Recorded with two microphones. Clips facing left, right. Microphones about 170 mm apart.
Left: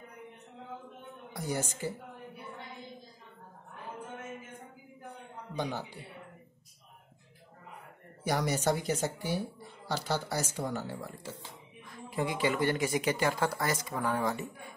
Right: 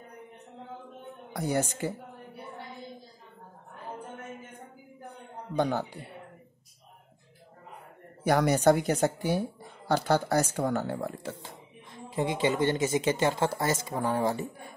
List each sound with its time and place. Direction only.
1.3 s speech: 65° right (ahead or behind)
5.6 s speech: 60° right (ahead or behind)
8.2 s speech: 55° right (ahead or behind)
11.9 s speech: 20° right (ahead or behind)